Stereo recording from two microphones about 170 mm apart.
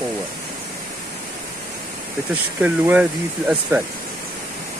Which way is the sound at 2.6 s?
10° right (ahead or behind).